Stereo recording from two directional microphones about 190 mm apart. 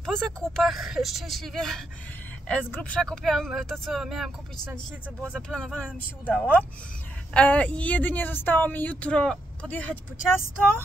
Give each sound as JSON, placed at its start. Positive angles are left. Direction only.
{"t": 0.0, "sound": "speech", "side_deg": 5}
{"t": 5.5, "sound": "speech", "side_deg": 5}